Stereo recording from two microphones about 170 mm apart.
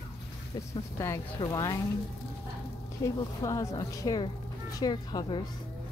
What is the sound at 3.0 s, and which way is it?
Speech, 20° left (ahead or behind).